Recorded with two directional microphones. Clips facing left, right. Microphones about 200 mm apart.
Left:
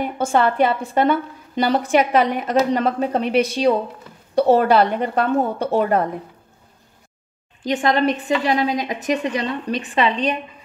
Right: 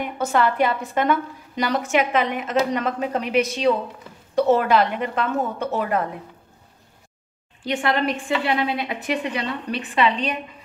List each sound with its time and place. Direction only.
0.0 s a woman's voice: 30° left (ahead or behind)
7.6 s a woman's voice: 40° left (ahead or behind)